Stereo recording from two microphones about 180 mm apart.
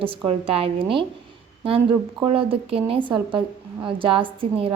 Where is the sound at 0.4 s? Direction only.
30° right (ahead or behind).